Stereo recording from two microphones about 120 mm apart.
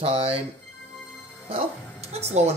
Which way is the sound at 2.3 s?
70° right (ahead or behind).